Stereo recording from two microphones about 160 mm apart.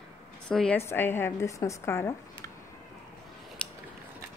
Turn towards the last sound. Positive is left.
turn(degrees=5)  # may be behind; listen again after turning